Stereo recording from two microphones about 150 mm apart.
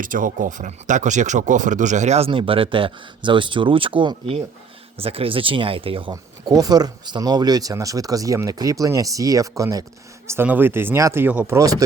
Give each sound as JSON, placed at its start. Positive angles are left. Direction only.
{"t": 0.0, "sound": "speech", "side_deg": -65}